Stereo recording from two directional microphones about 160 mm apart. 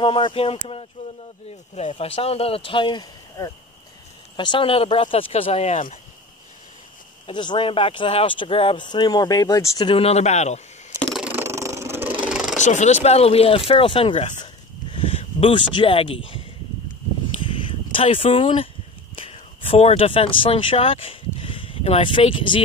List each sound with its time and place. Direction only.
0.0 s speech: 30° left (ahead or behind); by 5.9 s 50° left (ahead or behind)
7.2 s speech: 30° left (ahead or behind)
9.9 s speech: 40° left (ahead or behind)
11.0 s ratchet: 5° left (ahead or behind)
11.2 s vehicle: 15° right (ahead or behind)
12.5 s speech: 50° left (ahead or behind); by 14.2 s 35° left (ahead or behind)
14.4 s a sound: 35° left (ahead or behind)
15.7 s speech: 35° left (ahead or behind)
17.6 s speech: 35° left (ahead or behind)